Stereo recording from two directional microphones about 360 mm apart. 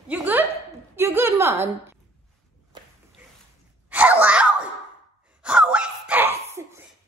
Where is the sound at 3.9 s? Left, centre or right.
Centre.